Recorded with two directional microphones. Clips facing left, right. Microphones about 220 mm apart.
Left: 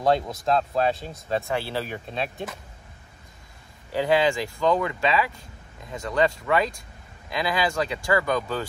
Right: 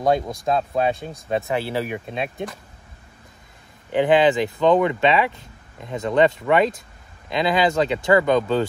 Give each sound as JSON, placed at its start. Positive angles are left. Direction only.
{"t": 0.5, "sound": "speech", "side_deg": -20}
{"t": 3.9, "sound": "speech", "side_deg": -20}